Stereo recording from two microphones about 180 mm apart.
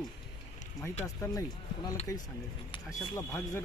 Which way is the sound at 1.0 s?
20° left (ahead or behind).